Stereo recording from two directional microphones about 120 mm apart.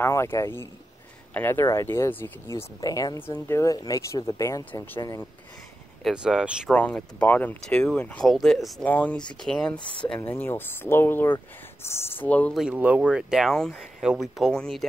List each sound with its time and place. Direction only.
0.0 s speech: 20° left (ahead or behind)
2.5 s speech: 30° left (ahead or behind)
3.2 s speech: 20° left (ahead or behind)
6.0 s speech: 5° right (ahead or behind)
6.7 s speech: 10° left (ahead or behind)
8.8 s speech: 15° left (ahead or behind)
12.5 s speech: 10° right (ahead or behind)